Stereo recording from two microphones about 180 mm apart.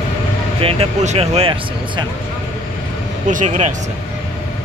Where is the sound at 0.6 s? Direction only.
30° right (ahead or behind).